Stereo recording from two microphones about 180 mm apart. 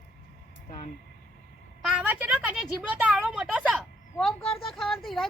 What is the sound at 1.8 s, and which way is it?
A woman's voice, 5° right (ahead or behind).